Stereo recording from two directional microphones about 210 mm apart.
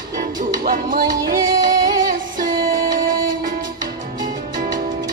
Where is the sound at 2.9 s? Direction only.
40° right (ahead or behind).